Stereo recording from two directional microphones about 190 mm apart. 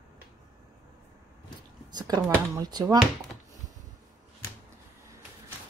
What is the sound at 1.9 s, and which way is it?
Speech, 20° right (ahead or behind).